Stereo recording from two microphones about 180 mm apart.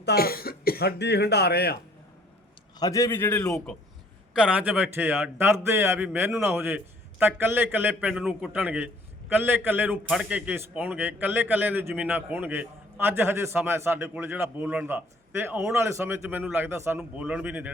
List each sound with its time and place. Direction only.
0.0 s speech: 60° left (ahead or behind)
2.7 s a man's voice: 20° left (ahead or behind)
4.4 s a man's voice: 5° right (ahead or behind)